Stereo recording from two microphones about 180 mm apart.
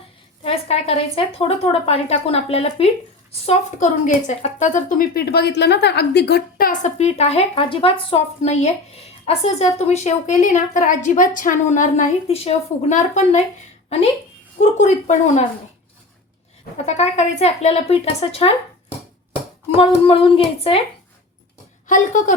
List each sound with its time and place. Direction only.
0.4 s a woman's voice: 35° left (ahead or behind)
14.6 s a woman's voice: 45° left (ahead or behind)
16.7 s a woman's voice: 40° left (ahead or behind)
19.7 s a woman's voice: 30° left (ahead or behind)
21.8 s a woman's voice: 45° left (ahead or behind)